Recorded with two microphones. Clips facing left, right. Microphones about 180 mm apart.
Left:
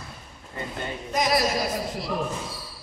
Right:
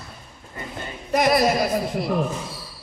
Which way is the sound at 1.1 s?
60° right (ahead or behind).